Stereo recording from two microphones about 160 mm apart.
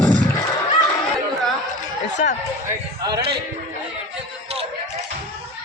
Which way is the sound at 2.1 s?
50° left (ahead or behind).